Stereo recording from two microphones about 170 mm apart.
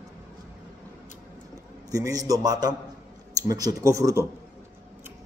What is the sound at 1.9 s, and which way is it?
A man's voice, 20° right (ahead or behind).